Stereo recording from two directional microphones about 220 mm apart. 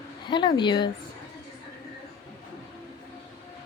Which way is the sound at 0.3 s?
20° left (ahead or behind).